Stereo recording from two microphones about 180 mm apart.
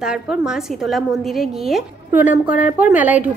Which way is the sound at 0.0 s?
5° right (ahead or behind).